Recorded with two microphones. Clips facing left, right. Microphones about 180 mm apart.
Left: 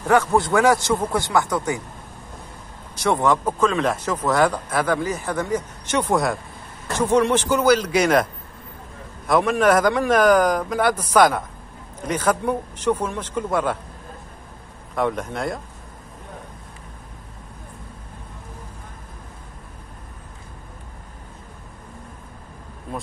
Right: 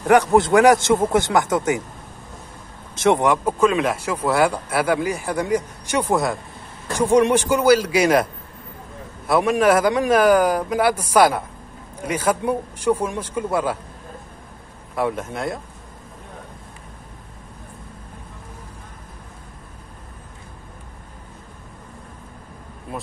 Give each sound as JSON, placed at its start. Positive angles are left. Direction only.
{"t": 0.6, "sound": "speech", "side_deg": -20}
{"t": 3.0, "sound": "speech", "side_deg": -20}
{"t": 6.9, "sound": "speech", "side_deg": -10}
{"t": 9.3, "sound": "speech", "side_deg": -10}
{"t": 15.0, "sound": "speech", "side_deg": -5}